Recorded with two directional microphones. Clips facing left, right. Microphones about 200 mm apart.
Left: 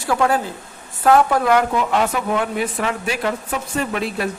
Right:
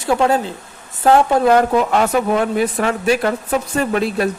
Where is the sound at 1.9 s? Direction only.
45° right (ahead or behind).